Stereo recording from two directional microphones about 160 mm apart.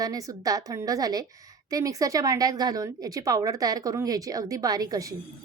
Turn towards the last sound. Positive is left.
turn(degrees=-20)  # may be behind; listen again after turning